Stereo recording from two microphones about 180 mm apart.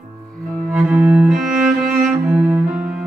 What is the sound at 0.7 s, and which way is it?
Cello, 5° right (ahead or behind).